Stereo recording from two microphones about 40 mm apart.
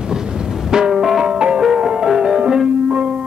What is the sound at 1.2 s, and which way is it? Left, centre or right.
Music, right.